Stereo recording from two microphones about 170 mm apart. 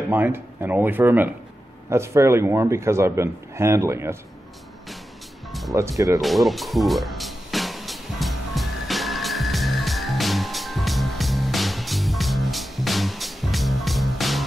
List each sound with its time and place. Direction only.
0.1 s a man's voice: 10° right (ahead or behind)
5.5 s music: centre (ahead or behind)
5.8 s a man's voice: 20° right (ahead or behind)
6.2 s music: centre (ahead or behind)